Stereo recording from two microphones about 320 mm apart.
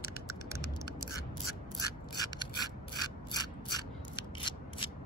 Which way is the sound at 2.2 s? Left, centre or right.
Centre.